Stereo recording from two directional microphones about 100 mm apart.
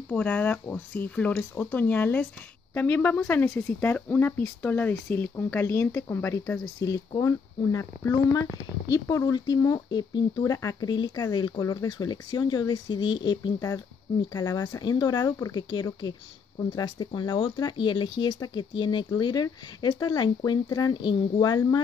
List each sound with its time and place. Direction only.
0.1 s speech: 15° left (ahead or behind)
6.8 s speech: 35° left (ahead or behind)